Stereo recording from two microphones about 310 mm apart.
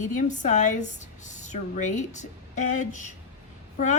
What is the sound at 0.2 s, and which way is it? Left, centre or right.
Speech, left.